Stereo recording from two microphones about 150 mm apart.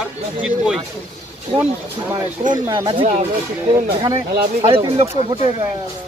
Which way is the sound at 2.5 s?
30° right (ahead or behind).